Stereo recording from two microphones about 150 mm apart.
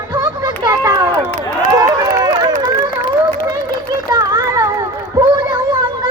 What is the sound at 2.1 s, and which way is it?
Run, 25° right (ahead or behind).